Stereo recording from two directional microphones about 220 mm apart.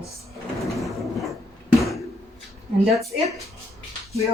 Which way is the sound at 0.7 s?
Centre (ahead or behind).